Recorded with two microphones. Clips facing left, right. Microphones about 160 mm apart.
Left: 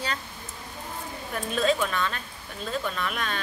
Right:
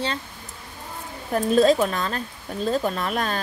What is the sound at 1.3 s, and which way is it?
Speech, 40° right (ahead or behind).